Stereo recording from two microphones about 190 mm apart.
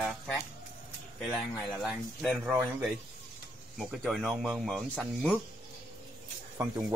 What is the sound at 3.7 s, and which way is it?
Speech, centre (ahead or behind).